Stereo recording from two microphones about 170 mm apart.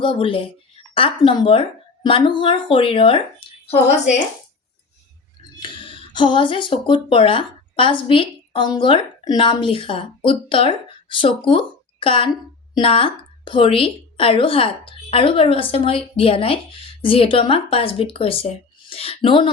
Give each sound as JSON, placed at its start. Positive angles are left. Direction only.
{"t": 0.0, "sound": "a woman's voice", "side_deg": 30}
{"t": 5.6, "sound": "a woman's voice", "side_deg": 30}